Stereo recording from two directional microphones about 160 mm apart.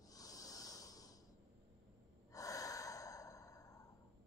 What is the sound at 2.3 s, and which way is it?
Breathing, 20° left (ahead or behind).